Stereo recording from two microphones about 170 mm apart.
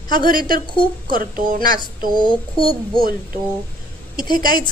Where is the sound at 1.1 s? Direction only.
55° right (ahead or behind).